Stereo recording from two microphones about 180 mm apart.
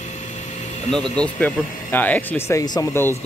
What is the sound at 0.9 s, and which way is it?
Speech, 5° left (ahead or behind).